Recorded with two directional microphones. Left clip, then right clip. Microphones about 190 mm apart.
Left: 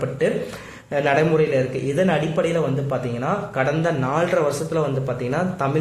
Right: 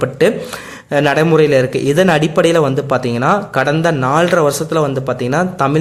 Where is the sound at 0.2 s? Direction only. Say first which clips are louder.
Right 8 dB; 45° right (ahead or behind).